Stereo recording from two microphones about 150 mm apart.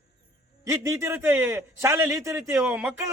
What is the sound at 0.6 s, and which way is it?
A man's voice, 20° right (ahead or behind).